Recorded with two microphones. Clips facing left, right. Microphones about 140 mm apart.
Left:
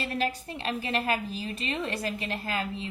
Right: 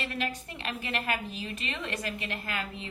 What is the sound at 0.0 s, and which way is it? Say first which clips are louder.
A woman's voice: left 4 dB; 35° left (ahead or behind).